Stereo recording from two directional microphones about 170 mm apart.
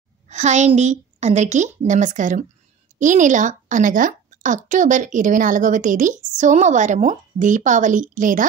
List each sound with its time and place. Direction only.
0.3 s a woman's voice: 45° right (ahead or behind)